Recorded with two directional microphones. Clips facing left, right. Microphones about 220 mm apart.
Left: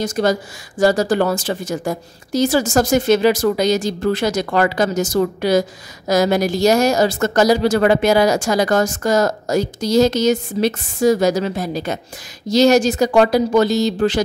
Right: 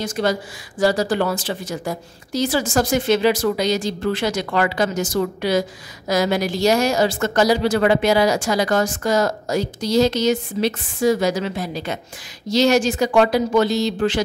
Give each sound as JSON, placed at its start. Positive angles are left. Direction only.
{"t": 0.0, "sound": "speech", "side_deg": 40}